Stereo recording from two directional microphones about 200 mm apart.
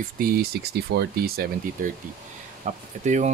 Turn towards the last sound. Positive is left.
turn(degrees=-35)  # may be behind; listen again after turning